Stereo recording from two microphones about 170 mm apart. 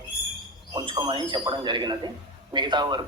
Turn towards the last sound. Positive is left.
turn(degrees=-25)  # may be behind; listen again after turning